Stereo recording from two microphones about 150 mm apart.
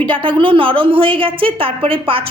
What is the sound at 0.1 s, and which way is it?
A woman's voice, 35° right (ahead or behind).